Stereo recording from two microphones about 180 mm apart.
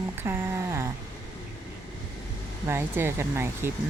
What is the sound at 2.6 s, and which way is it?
Speech, 15° right (ahead or behind).